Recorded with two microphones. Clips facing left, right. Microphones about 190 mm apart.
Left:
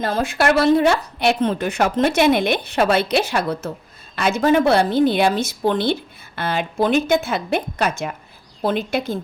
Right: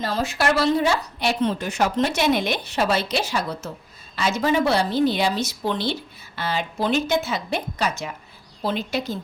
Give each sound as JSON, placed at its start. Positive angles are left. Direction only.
{"t": 0.0, "sound": "a woman's voice", "side_deg": 55}